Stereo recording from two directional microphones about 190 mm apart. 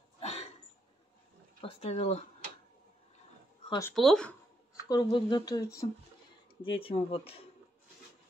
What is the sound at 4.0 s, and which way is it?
Speech, 5° left (ahead or behind).